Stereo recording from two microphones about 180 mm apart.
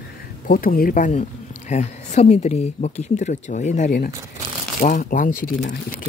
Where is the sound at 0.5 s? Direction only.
50° left (ahead or behind).